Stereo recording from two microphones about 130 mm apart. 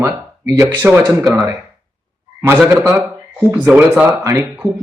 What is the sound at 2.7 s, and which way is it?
A man's voice, 20° right (ahead or behind).